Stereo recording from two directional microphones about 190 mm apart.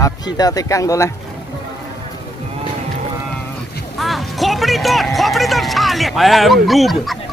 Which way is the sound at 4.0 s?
Centre (ahead or behind).